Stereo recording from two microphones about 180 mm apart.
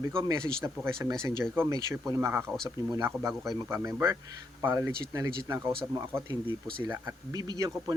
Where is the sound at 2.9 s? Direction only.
20° right (ahead or behind).